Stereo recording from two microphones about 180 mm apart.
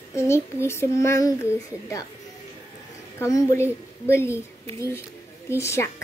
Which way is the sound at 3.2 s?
15° left (ahead or behind).